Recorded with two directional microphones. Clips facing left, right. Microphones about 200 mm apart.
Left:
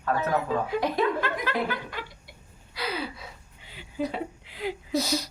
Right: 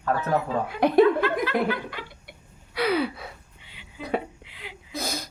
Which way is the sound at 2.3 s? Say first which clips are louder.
Right 3 dB; 65° right (ahead or behind).